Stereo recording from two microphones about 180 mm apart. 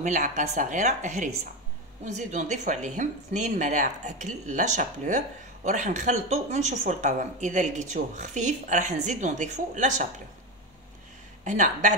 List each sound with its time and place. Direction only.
0.0 s a woman's voice: 45° right (ahead or behind)
11.4 s a woman's voice: 45° right (ahead or behind)